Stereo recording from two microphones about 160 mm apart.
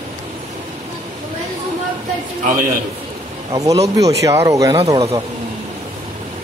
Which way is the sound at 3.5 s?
20° right (ahead or behind).